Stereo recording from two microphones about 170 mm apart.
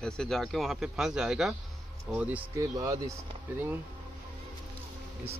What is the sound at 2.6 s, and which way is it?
Speech, 20° right (ahead or behind).